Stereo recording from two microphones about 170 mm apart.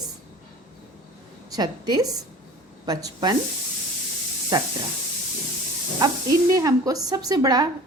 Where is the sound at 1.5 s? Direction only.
25° right (ahead or behind).